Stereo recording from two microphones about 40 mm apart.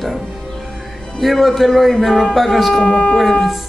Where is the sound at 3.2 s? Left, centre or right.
Centre.